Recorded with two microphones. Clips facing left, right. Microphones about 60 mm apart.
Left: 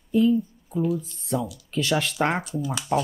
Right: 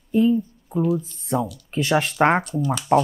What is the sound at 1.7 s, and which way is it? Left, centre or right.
Speech, right.